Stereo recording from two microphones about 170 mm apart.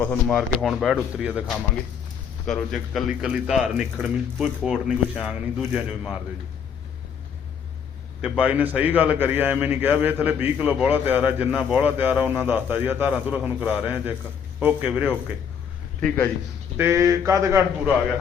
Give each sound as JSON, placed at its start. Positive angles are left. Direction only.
{"t": 0.0, "sound": "a man's voice", "side_deg": 5}
{"t": 8.2, "sound": "a man's voice", "side_deg": -10}
{"t": 16.0, "sound": "a man's voice", "side_deg": 10}
{"t": 16.7, "sound": "a man's voice", "side_deg": -15}